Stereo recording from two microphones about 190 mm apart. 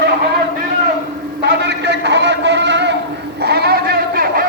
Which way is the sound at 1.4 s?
65° right (ahead or behind).